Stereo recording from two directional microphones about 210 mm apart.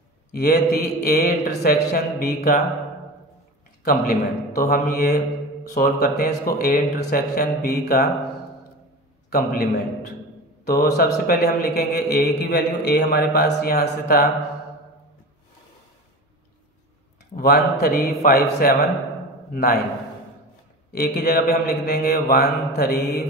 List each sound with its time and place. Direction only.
0.3 s a man's voice: 45° left (ahead or behind)
3.8 s a man's voice: 45° left (ahead or behind)
9.3 s a man's voice: 45° left (ahead or behind)
17.4 s a man's voice: 45° left (ahead or behind)
20.9 s a man's voice: 45° left (ahead or behind)